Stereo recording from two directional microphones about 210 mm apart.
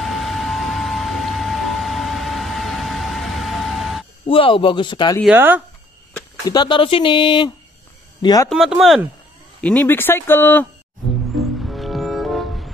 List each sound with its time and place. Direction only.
0.0 s vehicle: centre (ahead or behind)
4.3 s speech: 25° left (ahead or behind)
5.2 s speech: 10° right (ahead or behind)
6.4 s speech: 20° left (ahead or behind)
8.5 s speech: centre (ahead or behind)
11.6 s music: centre (ahead or behind)